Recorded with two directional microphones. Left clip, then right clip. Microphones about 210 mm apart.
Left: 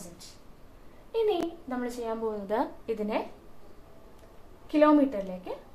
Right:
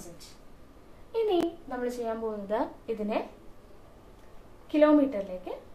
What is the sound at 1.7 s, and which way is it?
A woman's voice, 30° left (ahead or behind).